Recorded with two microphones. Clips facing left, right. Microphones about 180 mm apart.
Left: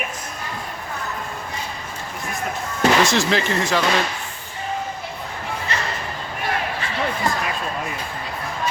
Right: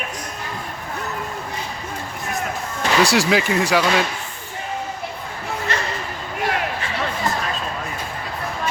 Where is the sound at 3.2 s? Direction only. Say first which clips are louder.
Right 2 dB; 10° right (ahead or behind).